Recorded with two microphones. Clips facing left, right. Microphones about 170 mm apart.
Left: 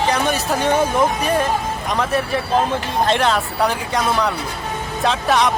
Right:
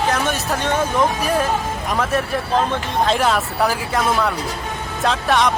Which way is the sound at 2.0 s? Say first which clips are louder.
Left 1 dB; centre (ahead or behind).